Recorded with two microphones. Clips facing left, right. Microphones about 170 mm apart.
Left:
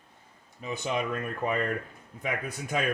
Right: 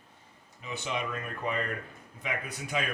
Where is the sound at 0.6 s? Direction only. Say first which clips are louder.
Left 4 dB; 40° left (ahead or behind).